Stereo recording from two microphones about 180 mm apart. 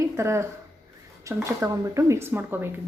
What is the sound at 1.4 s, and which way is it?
Speech, 15° right (ahead or behind).